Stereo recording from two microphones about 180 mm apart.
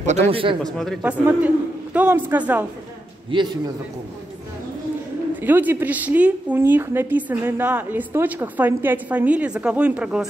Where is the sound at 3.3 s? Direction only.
25° right (ahead or behind).